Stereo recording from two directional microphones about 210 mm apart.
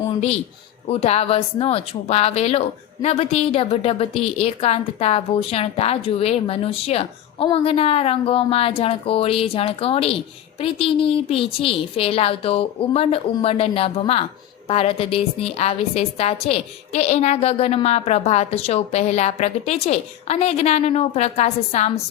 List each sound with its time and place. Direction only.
0.9 s a woman's voice: 30° left (ahead or behind)